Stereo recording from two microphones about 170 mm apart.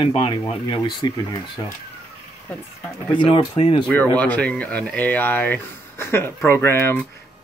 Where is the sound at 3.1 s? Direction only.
30° left (ahead or behind).